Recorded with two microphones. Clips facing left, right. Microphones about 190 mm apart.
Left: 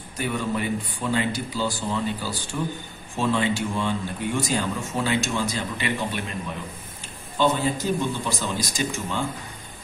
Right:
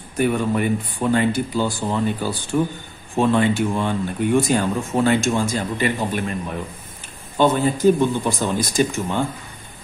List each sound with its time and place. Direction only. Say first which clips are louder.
0.2 s speech: right 7 dB; 55° right (ahead or behind)
7.3 s speech: right 5 dB; 50° right (ahead or behind)